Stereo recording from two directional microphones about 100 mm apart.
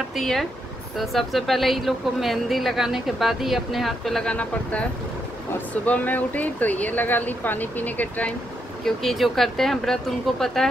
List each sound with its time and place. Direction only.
0.1 s speech: 5° left (ahead or behind)
5.9 s speech: 15° left (ahead or behind)
8.8 s speech: centre (ahead or behind)